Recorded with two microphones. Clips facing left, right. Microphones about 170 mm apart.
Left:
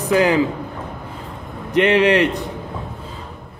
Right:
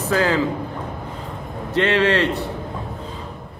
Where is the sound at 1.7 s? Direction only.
15° left (ahead or behind).